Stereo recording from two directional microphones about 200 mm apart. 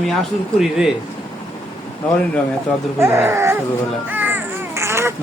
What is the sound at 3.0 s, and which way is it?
Speech, 15° right (ahead or behind).